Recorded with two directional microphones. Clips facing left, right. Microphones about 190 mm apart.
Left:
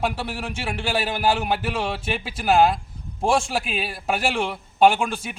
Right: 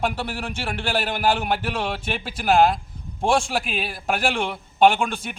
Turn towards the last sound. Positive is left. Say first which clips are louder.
# even
turn(degrees=5)  # may be behind; listen again after turning